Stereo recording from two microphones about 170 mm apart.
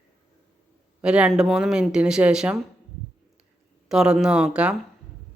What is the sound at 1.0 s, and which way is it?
Speech, 5° right (ahead or behind).